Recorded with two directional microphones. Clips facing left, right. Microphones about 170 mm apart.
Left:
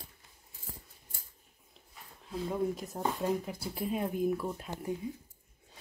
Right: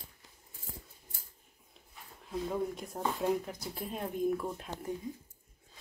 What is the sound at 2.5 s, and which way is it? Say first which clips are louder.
Speech: left 5 dB; centre (ahead or behind).